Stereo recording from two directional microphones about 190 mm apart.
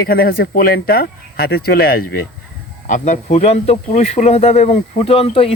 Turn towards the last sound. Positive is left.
turn(degrees=30)  # may be behind; listen again after turning